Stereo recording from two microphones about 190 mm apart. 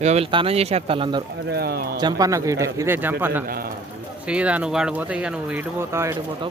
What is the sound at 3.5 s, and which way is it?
Speech, 50° right (ahead or behind).